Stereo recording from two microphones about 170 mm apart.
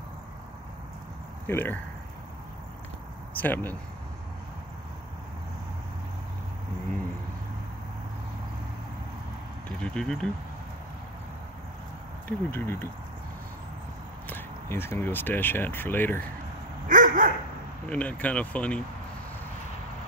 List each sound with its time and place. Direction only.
1.5 s speech: 10° left (ahead or behind)
3.3 s speech: 10° left (ahead or behind)
9.7 s speech: 5° left (ahead or behind)
12.3 s speech: 15° left (ahead or behind)
14.2 s speech: 15° left (ahead or behind)
16.8 s dog: 50° right (ahead or behind)
17.8 s speech: 10° left (ahead or behind)